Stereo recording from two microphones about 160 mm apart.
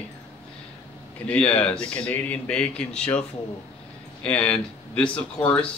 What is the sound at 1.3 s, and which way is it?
A man's voice, 5° left (ahead or behind).